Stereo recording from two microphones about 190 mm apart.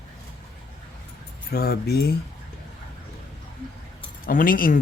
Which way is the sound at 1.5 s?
55° left (ahead or behind).